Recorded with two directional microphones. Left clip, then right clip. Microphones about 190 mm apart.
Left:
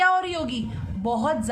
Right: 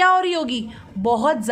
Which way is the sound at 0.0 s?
40° right (ahead or behind).